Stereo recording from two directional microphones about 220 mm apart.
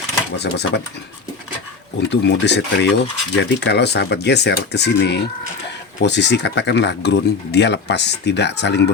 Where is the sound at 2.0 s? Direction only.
50° left (ahead or behind).